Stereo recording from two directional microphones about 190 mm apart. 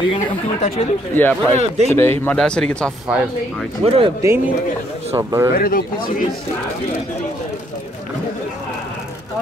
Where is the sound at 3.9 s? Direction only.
30° right (ahead or behind).